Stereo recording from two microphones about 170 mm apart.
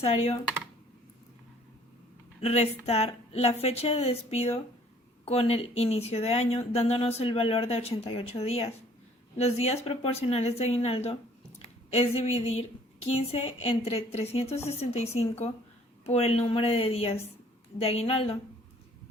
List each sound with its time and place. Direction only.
0.0 s speech: 35° left (ahead or behind)
2.4 s speech: 40° left (ahead or behind)